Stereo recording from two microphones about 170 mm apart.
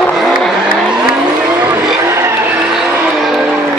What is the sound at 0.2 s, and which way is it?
Vehicle, centre (ahead or behind).